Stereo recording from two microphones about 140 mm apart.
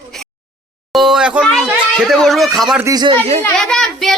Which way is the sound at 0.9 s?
Centre (ahead or behind).